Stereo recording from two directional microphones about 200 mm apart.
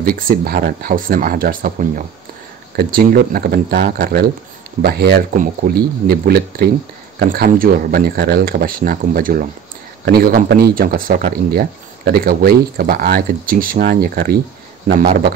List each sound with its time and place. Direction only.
0.0 s speech: 45° right (ahead or behind)